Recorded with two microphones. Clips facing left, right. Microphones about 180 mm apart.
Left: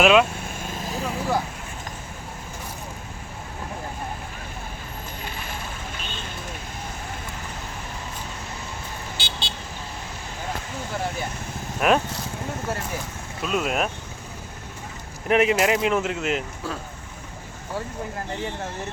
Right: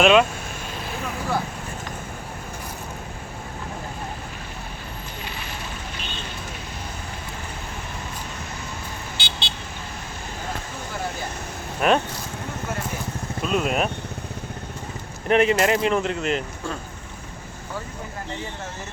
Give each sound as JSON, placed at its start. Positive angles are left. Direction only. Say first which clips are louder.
{"t": 0.0, "sound": "speech", "louder": "right 1 dB", "side_deg": 0}
{"t": 9.1, "sound": "vehicle", "louder": "even", "side_deg": 40}
{"t": 11.8, "sound": "speech", "louder": "even", "side_deg": 0}
{"t": 13.4, "sound": "speech", "louder": "right 1 dB", "side_deg": 0}
{"t": 15.3, "sound": "speech", "louder": "right 1 dB", "side_deg": 5}